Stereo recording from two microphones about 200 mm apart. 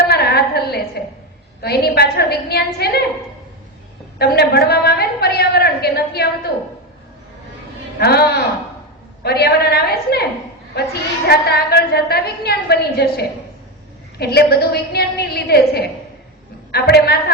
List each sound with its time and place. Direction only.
0.0 s a sound: 50° left (ahead or behind)
1.6 s a woman's voice: 55° left (ahead or behind)
4.2 s a woman's voice: 55° left (ahead or behind)
7.9 s a woman's voice: 50° left (ahead or behind)
11.3 s a woman's voice: 50° left (ahead or behind)